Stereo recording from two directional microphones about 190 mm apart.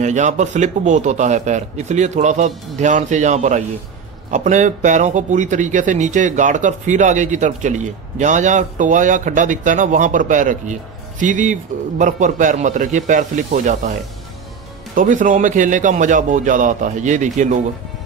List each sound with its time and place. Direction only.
0.0 s speech: 40° right (ahead or behind)
15.0 s a man's voice: 45° right (ahead or behind)